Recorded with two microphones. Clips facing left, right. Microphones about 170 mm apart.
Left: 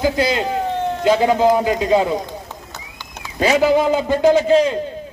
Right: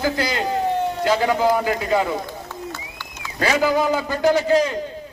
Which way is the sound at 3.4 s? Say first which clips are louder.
Left 4 dB; 20° left (ahead or behind).